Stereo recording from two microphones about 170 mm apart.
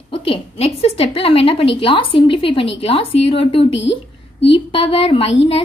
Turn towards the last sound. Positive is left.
turn(degrees=35)  # may be behind; listen again after turning